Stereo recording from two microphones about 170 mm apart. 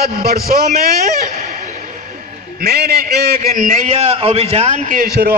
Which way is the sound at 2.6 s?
65° right (ahead or behind).